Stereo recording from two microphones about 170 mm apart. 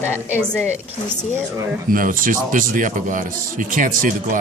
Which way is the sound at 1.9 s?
55° right (ahead or behind).